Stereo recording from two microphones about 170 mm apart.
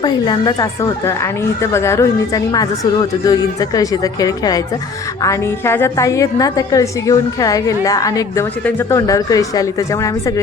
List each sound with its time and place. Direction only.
0.0 s a woman's voice: 25° left (ahead or behind)